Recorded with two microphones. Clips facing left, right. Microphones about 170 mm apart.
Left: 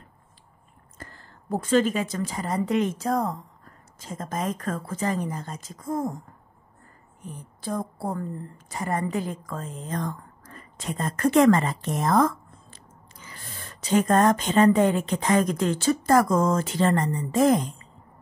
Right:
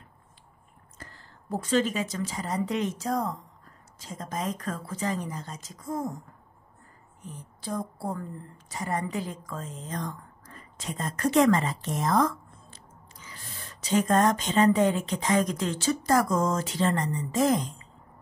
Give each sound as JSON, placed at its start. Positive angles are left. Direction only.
{"t": 0.9, "sound": "a woman's voice", "side_deg": 50}
{"t": 7.6, "sound": "a woman's voice", "side_deg": 55}